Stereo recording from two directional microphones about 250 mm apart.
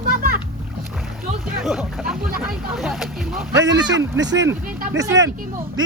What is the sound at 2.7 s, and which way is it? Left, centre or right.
Speech, centre.